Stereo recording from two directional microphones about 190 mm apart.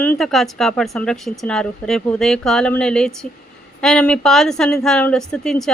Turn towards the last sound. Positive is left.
turn(degrees=5)  # may be behind; listen again after turning